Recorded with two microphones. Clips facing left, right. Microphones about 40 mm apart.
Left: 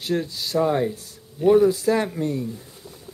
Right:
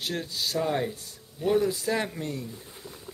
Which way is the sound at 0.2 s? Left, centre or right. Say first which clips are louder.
Left 6 dB; centre.